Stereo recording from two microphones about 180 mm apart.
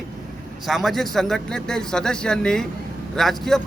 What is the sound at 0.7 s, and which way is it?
Speech, centre (ahead or behind).